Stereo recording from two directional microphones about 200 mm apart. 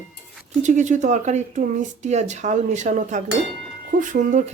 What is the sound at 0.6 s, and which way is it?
Speech, 40° right (ahead or behind).